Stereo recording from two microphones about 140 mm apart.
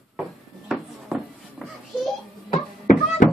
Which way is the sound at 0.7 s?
Centre (ahead or behind).